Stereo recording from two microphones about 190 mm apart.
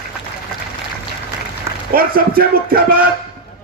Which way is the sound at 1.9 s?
50° right (ahead or behind).